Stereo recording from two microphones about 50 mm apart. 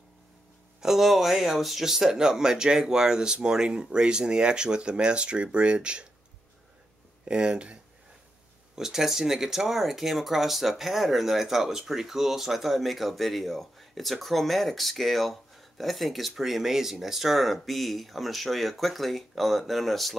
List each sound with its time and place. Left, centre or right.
0.7 s speech: centre
7.2 s speech: centre
8.7 s speech: centre